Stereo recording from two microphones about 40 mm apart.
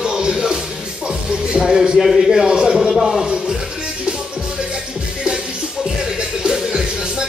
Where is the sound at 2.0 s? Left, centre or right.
Centre.